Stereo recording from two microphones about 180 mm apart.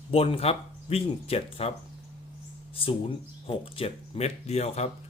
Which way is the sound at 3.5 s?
30° left (ahead or behind).